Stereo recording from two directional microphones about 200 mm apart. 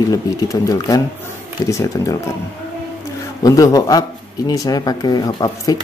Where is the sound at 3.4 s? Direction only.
15° left (ahead or behind).